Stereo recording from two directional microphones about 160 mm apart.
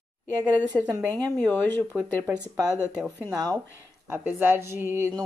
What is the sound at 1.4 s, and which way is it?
Speech, 10° left (ahead or behind).